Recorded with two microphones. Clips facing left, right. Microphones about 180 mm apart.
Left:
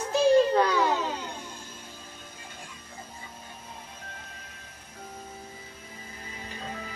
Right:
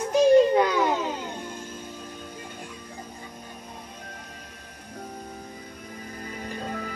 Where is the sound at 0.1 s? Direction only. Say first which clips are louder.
Right 4 dB; 10° right (ahead or behind).